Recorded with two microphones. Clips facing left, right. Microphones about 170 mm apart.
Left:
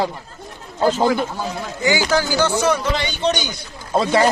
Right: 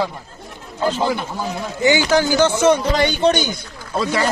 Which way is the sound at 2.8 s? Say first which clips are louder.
Right 5 dB; 50° right (ahead or behind).